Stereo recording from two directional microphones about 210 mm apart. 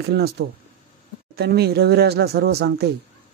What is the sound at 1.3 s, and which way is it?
Speech, 50° right (ahead or behind).